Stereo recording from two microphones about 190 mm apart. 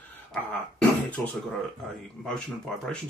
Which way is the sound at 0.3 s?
5° left (ahead or behind).